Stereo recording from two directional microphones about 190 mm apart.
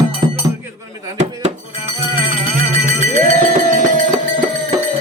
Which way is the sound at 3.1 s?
45° right (ahead or behind).